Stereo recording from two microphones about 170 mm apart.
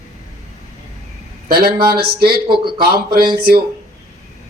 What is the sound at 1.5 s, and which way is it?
Speech, 60° right (ahead or behind).